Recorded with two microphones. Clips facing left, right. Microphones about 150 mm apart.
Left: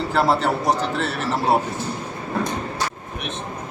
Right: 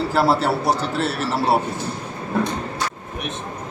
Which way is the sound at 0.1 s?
5° right (ahead or behind).